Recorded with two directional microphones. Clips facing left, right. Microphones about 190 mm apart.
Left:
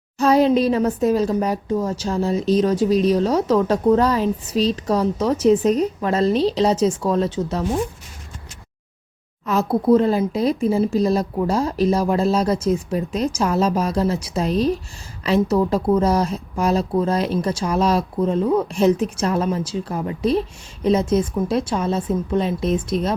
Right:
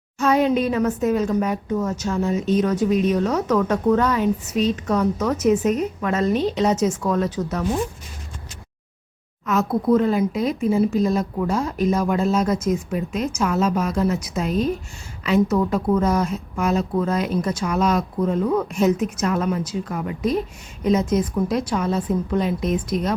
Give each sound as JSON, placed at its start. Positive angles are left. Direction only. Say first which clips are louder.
{"t": 0.2, "sound": "a woman's voice", "louder": "left 3 dB", "side_deg": 35}
{"t": 9.5, "sound": "a woman's voice", "louder": "left 2 dB", "side_deg": 30}